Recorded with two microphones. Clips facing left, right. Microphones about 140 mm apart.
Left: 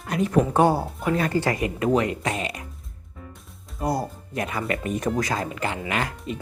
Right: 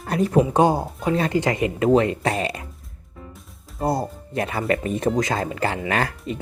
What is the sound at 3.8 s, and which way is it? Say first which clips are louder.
Speech: right 3 dB; 25° right (ahead or behind).